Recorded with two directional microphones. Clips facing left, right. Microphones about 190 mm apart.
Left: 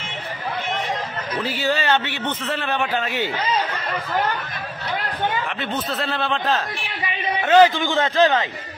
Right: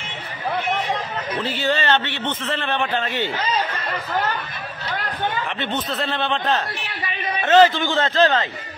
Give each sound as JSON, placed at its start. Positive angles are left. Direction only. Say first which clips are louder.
{"t": 1.4, "sound": "a man's voice", "louder": "even", "side_deg": 10}
{"t": 5.3, "sound": "speech", "louder": "even", "side_deg": 0}
{"t": 7.4, "sound": "a man's voice", "louder": "even", "side_deg": 10}